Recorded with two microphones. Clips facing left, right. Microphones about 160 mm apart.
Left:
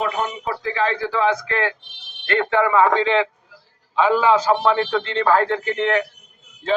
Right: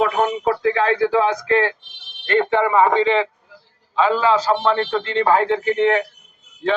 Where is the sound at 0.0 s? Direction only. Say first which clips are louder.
Right 6 dB; 65° right (ahead or behind); by 1.4 s 50° right (ahead or behind).